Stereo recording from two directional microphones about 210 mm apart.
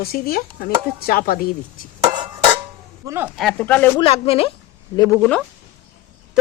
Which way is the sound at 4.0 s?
25° left (ahead or behind).